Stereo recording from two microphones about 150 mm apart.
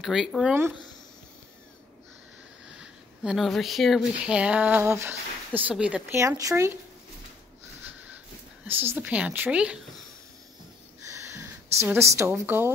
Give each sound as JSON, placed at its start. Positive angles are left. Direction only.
{"t": 0.0, "sound": "speech", "side_deg": 0}
{"t": 2.8, "sound": "speech", "side_deg": 0}
{"t": 8.6, "sound": "speech", "side_deg": -15}
{"t": 11.1, "sound": "a sound", "side_deg": -20}
{"t": 11.8, "sound": "a woman's voice", "side_deg": -15}